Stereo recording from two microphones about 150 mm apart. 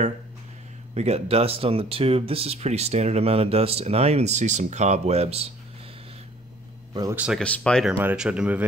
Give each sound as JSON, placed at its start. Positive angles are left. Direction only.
{"t": 0.9, "sound": "speech", "side_deg": -45}
{"t": 7.2, "sound": "speech", "side_deg": -5}
{"t": 7.4, "sound": "speech", "side_deg": 5}
{"t": 8.0, "sound": "speech", "side_deg": -10}